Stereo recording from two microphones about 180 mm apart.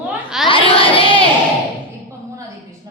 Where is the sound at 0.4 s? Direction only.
30° left (ahead or behind).